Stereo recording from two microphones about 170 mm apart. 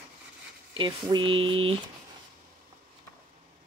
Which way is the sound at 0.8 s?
30° right (ahead or behind).